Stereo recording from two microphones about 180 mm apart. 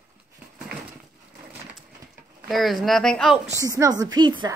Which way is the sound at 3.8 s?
20° right (ahead or behind).